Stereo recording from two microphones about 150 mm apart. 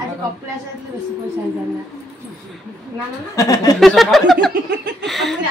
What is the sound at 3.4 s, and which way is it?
Speech, 25° left (ahead or behind).